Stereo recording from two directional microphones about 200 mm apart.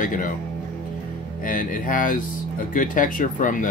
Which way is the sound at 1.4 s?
45° left (ahead or behind).